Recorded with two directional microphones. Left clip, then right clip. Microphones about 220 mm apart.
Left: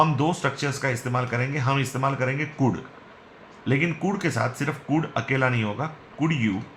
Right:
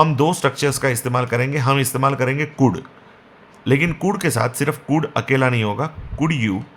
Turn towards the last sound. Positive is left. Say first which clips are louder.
# right 4 dB
turn(degrees=-50)  # may be behind; listen again after turning